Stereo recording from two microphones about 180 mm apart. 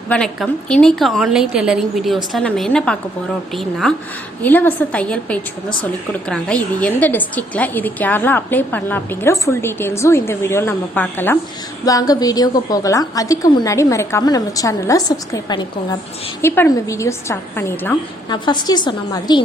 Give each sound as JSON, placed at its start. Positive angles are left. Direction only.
{"t": 0.1, "sound": "a woman's voice", "side_deg": 5}
{"t": 18.3, "sound": "a woman's voice", "side_deg": 25}